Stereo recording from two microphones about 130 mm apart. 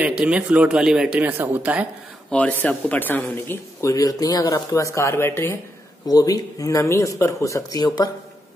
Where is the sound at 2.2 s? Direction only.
10° left (ahead or behind).